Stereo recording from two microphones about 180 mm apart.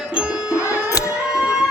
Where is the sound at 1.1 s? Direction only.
5° right (ahead or behind).